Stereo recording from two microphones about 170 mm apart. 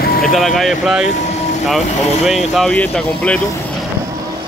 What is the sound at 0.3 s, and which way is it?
Speech, centre (ahead or behind).